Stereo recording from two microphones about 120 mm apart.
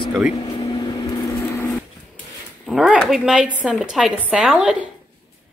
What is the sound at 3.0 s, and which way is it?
Speech, 5° right (ahead or behind).